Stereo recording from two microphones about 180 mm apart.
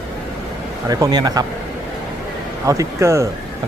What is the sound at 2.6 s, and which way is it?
Speech, 20° right (ahead or behind).